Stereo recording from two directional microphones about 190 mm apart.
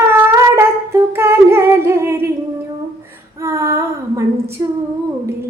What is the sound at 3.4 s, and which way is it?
Female singing, 15° right (ahead or behind).